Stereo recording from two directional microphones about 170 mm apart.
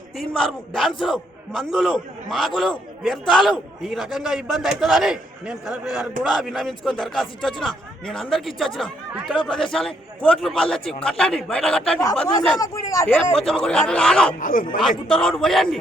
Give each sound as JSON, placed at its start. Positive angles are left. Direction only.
{"t": 0.2, "sound": "a man's voice", "side_deg": 5}
{"t": 12.5, "sound": "speech", "side_deg": 20}
{"t": 13.3, "sound": "a man's voice", "side_deg": 5}
{"t": 14.3, "sound": "speech", "side_deg": 50}
{"t": 15.1, "sound": "a man's voice", "side_deg": 5}